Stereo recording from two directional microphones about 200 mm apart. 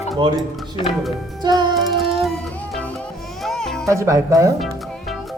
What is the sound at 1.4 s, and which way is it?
Music, 20° right (ahead or behind).